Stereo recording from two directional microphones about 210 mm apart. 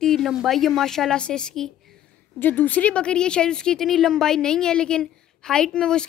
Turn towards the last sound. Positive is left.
turn(degrees=5)  # may be behind; listen again after turning